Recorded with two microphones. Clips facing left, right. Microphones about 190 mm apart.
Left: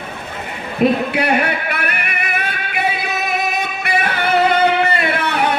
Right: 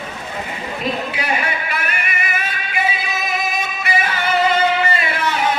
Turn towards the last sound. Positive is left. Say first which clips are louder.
# left 2 dB
turn(degrees=65)  # may be behind; listen again after turning